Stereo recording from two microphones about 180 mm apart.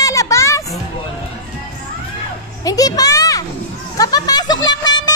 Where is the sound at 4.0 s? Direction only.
20° left (ahead or behind).